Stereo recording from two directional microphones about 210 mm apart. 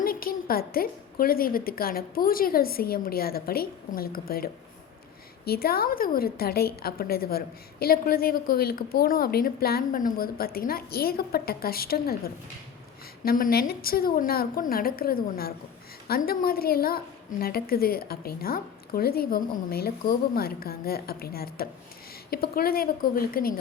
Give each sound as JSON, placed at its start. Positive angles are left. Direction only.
{"t": 0.0, "sound": "a woman's voice", "side_deg": 45}